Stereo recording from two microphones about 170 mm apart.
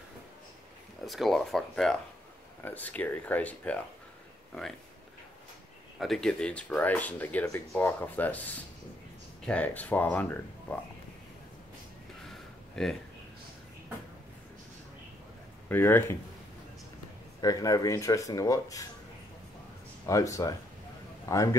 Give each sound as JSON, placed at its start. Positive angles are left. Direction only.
{"t": 1.0, "sound": "speech", "side_deg": 0}
{"t": 5.9, "sound": "speech", "side_deg": 0}
{"t": 12.3, "sound": "a sound", "side_deg": 0}
{"t": 15.7, "sound": "speech", "side_deg": 15}
{"t": 17.4, "sound": "speech", "side_deg": 20}
{"t": 20.1, "sound": "speech", "side_deg": 20}